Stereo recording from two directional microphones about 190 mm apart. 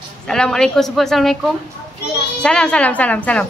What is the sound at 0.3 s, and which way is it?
Speech, 5° left (ahead or behind).